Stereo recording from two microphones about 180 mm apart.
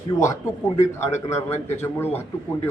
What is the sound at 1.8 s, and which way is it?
Speech, 10° left (ahead or behind).